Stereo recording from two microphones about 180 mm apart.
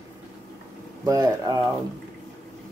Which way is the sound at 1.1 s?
20° right (ahead or behind).